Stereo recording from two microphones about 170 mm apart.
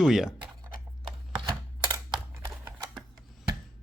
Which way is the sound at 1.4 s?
30° right (ahead or behind).